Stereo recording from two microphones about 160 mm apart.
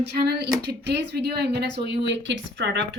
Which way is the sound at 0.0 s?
85° right.